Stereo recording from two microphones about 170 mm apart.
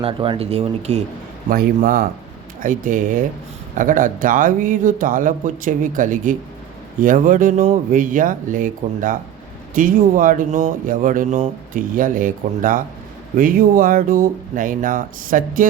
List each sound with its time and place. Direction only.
0.0 s speech: 30° right (ahead or behind)
1.5 s speech: 55° right (ahead or behind)